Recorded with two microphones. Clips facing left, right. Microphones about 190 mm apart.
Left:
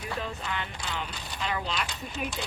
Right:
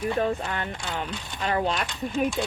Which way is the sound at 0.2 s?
50° right (ahead or behind).